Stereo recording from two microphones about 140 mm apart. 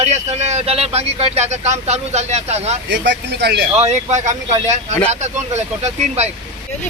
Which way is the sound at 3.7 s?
50° right (ahead or behind).